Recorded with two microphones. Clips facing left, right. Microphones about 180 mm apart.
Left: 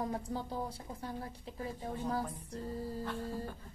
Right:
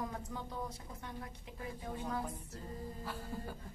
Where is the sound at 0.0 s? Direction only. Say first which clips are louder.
Left 5 dB; 30° left (ahead or behind).